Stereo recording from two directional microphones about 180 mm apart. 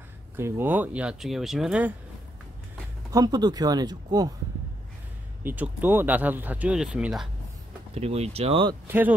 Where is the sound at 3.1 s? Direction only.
20° right (ahead or behind).